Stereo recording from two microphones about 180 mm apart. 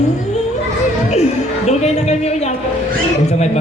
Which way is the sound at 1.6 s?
40° left (ahead or behind).